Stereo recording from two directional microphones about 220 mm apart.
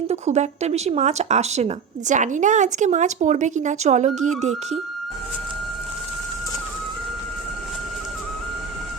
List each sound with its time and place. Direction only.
0.1 s speech: 30° right (ahead or behind)